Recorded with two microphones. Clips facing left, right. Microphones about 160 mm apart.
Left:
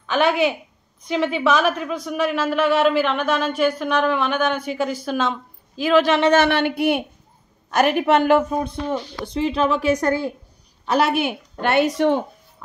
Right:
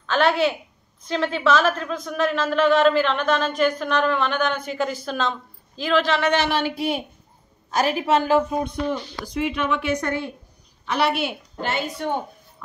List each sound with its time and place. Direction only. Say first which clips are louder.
0.0 s a woman's voice: left 1 dB; 10° left (ahead or behind)
6.3 s a woman's voice: left 5 dB; 60° left (ahead or behind)
8.6 s a woman's voice: left 1 dB; 30° left (ahead or behind); by 12.2 s 85° left